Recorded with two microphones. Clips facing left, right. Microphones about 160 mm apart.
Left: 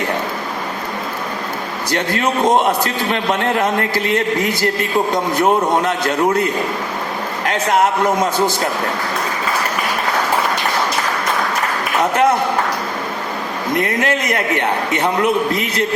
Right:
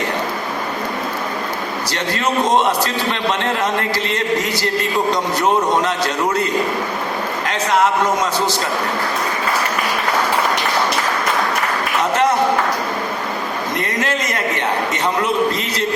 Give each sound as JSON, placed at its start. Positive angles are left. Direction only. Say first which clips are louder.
{"t": 1.9, "sound": "a man's voice", "louder": "left 7 dB", "side_deg": 50}
{"t": 3.6, "sound": "a man's voice", "louder": "left 2 dB", "side_deg": 50}
{"t": 7.4, "sound": "a man's voice", "louder": "left 2 dB", "side_deg": 50}
{"t": 13.7, "sound": "a man's voice", "louder": "left 5 dB", "side_deg": 55}